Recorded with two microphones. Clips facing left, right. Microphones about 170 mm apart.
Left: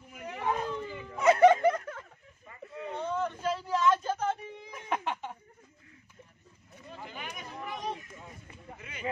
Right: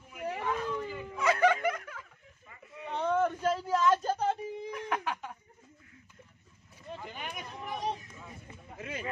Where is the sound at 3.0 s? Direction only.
55° right (ahead or behind); by 4.4 s 35° right (ahead or behind).